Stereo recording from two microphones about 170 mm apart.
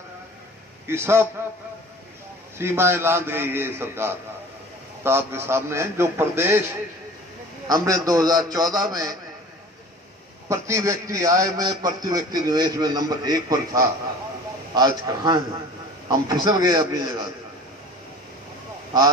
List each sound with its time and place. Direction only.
0.8 s a man's voice: 15° right (ahead or behind)
2.5 s a man's voice: 15° right (ahead or behind)
10.5 s a man's voice: 15° right (ahead or behind)